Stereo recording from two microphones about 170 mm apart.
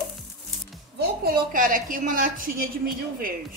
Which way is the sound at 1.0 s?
65° right (ahead or behind).